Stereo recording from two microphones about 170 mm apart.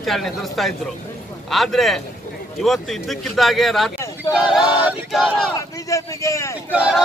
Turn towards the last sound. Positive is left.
turn(degrees=-5)  # may be behind; listen again after turning